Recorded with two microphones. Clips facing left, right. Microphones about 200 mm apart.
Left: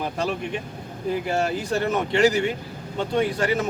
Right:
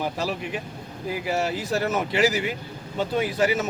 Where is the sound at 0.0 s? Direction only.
5° right (ahead or behind).